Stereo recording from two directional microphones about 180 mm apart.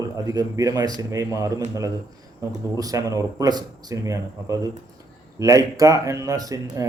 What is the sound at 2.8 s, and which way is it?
Speech, 20° right (ahead or behind).